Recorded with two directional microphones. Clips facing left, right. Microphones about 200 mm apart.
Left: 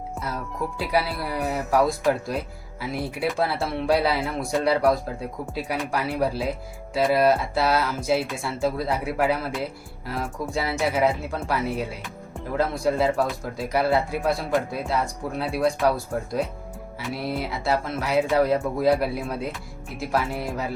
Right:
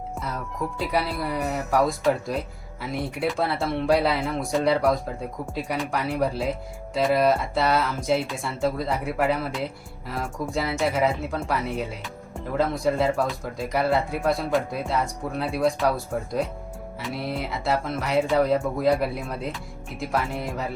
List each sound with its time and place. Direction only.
0.8 s speech: centre (ahead or behind)